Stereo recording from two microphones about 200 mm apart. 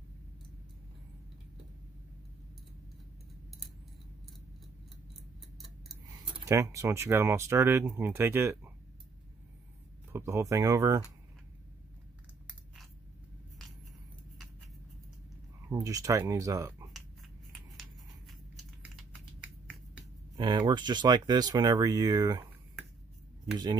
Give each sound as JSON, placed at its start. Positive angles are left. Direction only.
{"t": 6.4, "sound": "speech", "side_deg": -15}
{"t": 10.1, "sound": "speech", "side_deg": -15}
{"t": 15.7, "sound": "speech", "side_deg": -15}
{"t": 20.3, "sound": "speech", "side_deg": -20}